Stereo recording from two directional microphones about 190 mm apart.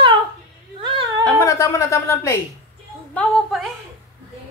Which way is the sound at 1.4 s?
15° left (ahead or behind).